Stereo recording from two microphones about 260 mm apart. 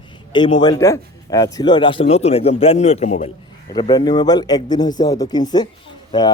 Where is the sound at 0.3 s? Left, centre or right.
Centre.